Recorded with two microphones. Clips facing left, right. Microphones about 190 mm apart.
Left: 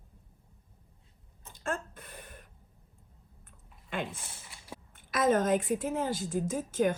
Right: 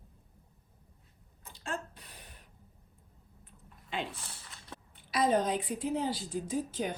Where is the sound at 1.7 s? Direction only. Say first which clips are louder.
Left 3 dB; 55° left (ahead or behind).